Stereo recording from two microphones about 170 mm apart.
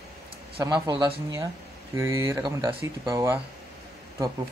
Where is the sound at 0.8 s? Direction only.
25° right (ahead or behind).